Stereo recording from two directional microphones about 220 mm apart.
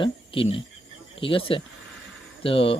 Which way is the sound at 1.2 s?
25° left (ahead or behind).